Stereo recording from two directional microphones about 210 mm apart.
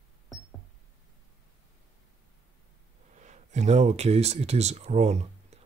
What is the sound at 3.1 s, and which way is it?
Speech, 35° right (ahead or behind).